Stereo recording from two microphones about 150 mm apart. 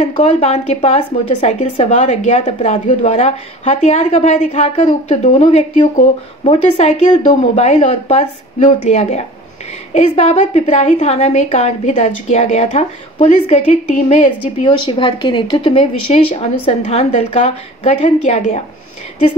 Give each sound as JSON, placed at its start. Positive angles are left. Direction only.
{"t": 0.1, "sound": "a woman's voice", "side_deg": 45}
{"t": 8.5, "sound": "a woman's voice", "side_deg": 55}
{"t": 14.6, "sound": "speech", "side_deg": 35}